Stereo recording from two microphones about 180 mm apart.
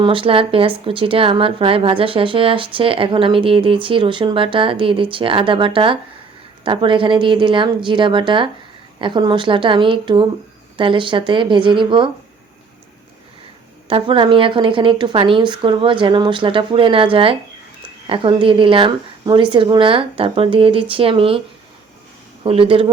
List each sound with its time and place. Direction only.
0.0 s speech: 30° right (ahead or behind)
13.9 s speech: 30° right (ahead or behind)
22.4 s speech: 30° right (ahead or behind)